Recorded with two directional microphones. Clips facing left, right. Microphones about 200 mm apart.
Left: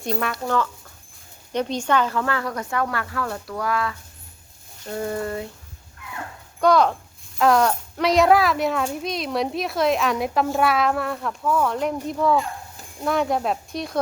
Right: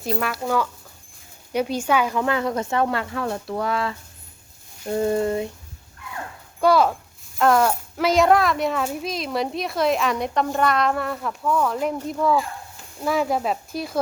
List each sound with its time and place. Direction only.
0.0 s a child's voice: centre (ahead or behind); by 5.5 s 20° right (ahead or behind)
6.6 s a child's voice: 5° right (ahead or behind)